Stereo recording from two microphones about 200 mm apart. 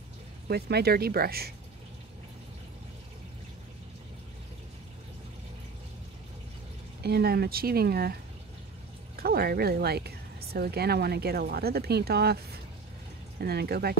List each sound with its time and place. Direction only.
0.5 s speech: 55° right (ahead or behind)
7.0 s speech: 55° right (ahead or behind)
9.2 s speech: 50° right (ahead or behind)